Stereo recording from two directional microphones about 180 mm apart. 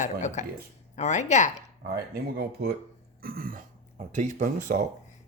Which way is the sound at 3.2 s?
55° right (ahead or behind).